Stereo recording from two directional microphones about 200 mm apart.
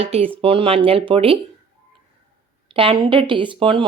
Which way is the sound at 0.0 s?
30° right (ahead or behind).